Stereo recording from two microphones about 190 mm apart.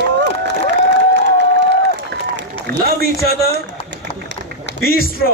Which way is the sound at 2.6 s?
55° right (ahead or behind).